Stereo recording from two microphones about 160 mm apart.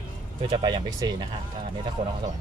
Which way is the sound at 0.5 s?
25° right (ahead or behind).